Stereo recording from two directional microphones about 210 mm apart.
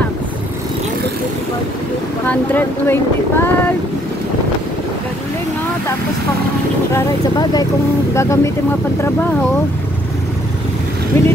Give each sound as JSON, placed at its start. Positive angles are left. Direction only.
{"t": 2.2, "sound": "speech", "side_deg": 10}
{"t": 6.9, "sound": "speech", "side_deg": 15}
{"t": 11.1, "sound": "speech", "side_deg": 10}